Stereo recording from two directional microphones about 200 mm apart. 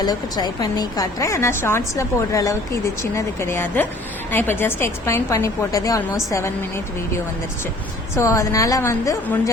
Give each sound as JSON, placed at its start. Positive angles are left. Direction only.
{"t": 0.0, "sound": "a woman's voice", "side_deg": 20}
{"t": 8.1, "sound": "a woman's voice", "side_deg": 15}